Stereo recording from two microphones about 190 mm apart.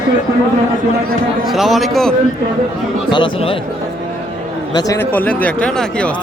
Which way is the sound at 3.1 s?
25° left (ahead or behind).